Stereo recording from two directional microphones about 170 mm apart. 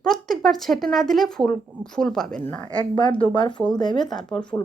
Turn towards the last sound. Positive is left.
turn(degrees=5)  # may be behind; listen again after turning